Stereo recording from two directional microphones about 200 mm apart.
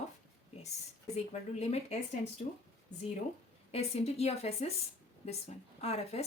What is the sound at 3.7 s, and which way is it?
A woman's voice, 30° left (ahead or behind).